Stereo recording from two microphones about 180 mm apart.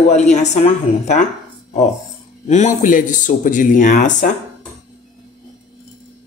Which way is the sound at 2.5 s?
40° left (ahead or behind).